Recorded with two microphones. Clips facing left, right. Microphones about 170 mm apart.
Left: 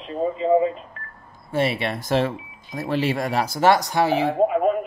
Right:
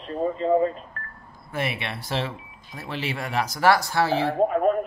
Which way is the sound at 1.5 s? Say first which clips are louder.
Left 7 dB; 30° left (ahead or behind).